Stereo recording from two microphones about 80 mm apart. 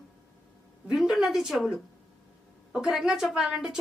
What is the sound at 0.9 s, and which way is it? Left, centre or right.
Speech, centre.